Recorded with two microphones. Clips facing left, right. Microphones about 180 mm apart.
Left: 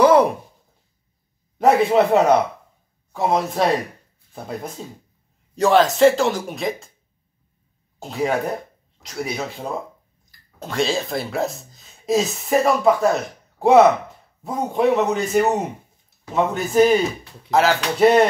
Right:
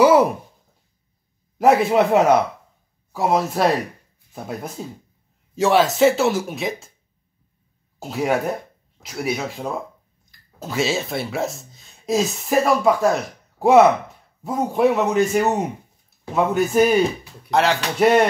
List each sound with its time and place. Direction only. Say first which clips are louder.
0.0 s a sound: even; 5° right (ahead or behind)
1.6 s speech: even; centre (ahead or behind)
5.5 s speech: left 1 dB; centre (ahead or behind)
9.0 s speech: right 2 dB; 5° right (ahead or behind)